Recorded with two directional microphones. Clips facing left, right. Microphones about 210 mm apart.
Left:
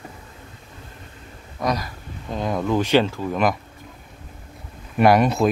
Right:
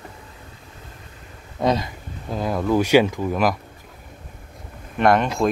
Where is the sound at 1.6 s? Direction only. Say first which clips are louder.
Right 4 dB; 25° right (ahead or behind).